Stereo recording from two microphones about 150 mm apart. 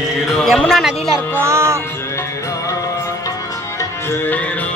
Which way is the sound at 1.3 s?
15° right (ahead or behind).